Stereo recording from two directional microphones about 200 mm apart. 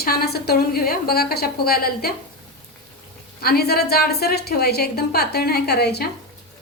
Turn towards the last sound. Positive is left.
turn(degrees=55)  # may be behind; listen again after turning